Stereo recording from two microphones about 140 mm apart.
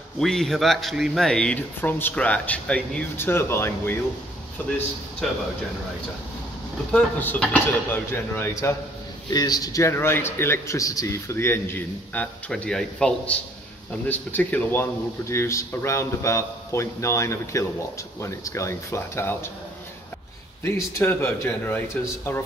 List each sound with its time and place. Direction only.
0.2 s a man's voice: 5° left (ahead or behind)
6.9 s a man's voice: 10° left (ahead or behind)
20.6 s a man's voice: 15° left (ahead or behind)